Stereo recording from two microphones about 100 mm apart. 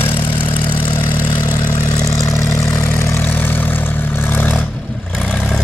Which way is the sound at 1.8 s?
35° left (ahead or behind).